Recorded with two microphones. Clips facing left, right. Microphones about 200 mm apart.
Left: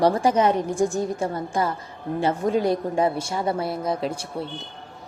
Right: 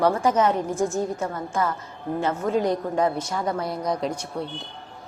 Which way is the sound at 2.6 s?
10° left (ahead or behind).